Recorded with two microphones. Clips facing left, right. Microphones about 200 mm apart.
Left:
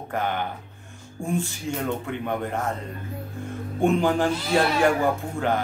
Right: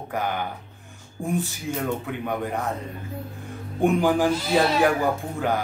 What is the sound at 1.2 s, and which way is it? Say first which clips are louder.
Speech: right 1 dB; 15° right (ahead or behind).